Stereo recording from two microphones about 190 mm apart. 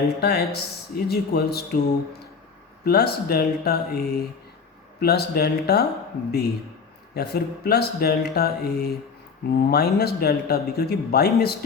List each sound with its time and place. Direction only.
0.2 s speech: 55° left (ahead or behind)
7.1 s speech: 55° left (ahead or behind)